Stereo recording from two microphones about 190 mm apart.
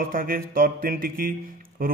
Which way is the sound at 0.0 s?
50° right (ahead or behind).